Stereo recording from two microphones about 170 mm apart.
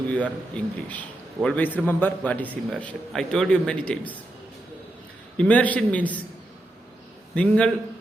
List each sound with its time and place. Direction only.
0.1 s a man's voice: 10° left (ahead or behind)
5.4 s a man's voice: 10° left (ahead or behind)
7.3 s a man's voice: 5° left (ahead or behind)